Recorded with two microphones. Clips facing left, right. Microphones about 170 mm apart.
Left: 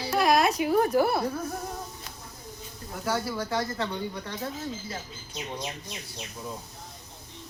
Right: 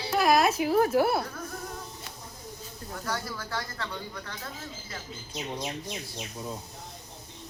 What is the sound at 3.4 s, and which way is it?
Speech, 25° left (ahead or behind).